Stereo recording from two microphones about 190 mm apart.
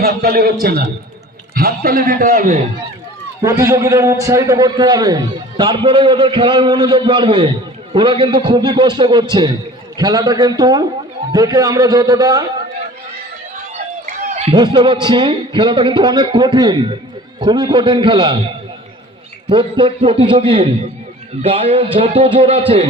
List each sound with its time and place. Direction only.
0.0 s a man's voice: 55° right (ahead or behind)
3.4 s a man's voice: 15° right (ahead or behind)
14.3 s a sound: 35° right (ahead or behind)
14.5 s a man's voice: 25° right (ahead or behind)
19.5 s a man's voice: 25° right (ahead or behind)